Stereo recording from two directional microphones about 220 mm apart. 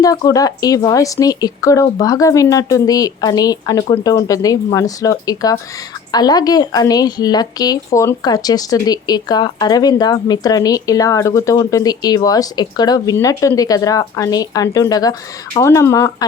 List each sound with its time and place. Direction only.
0.0 s speech: 15° left (ahead or behind)